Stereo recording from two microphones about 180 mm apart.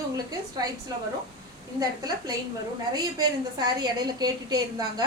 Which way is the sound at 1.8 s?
20° right (ahead or behind).